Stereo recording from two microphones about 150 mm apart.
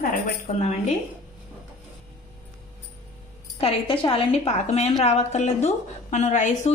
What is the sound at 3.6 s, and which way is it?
A woman's voice, 35° left (ahead or behind).